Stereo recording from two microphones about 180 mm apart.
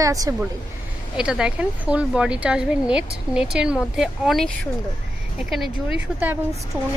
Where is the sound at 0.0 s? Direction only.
20° right (ahead or behind).